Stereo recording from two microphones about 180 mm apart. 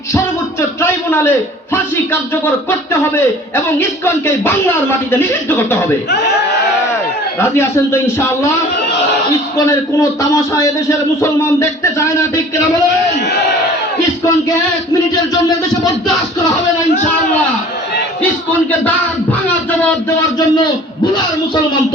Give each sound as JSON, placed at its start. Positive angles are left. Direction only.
{"t": 0.8, "sound": "a sound", "side_deg": 10}
{"t": 2.3, "sound": "a man's voice", "side_deg": 15}
{"t": 7.3, "sound": "a man's voice", "side_deg": 15}
{"t": 9.6, "sound": "a man's voice", "side_deg": 15}